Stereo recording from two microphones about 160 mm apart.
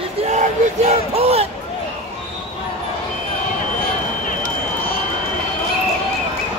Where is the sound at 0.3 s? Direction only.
45° right (ahead or behind).